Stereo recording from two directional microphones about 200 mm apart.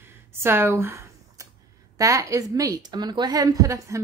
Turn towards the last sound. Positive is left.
turn(degrees=-15)  # may be behind; listen again after turning